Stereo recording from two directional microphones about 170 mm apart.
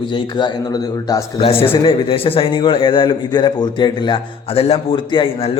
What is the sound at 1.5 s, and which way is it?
A man's voice, 30° left (ahead or behind).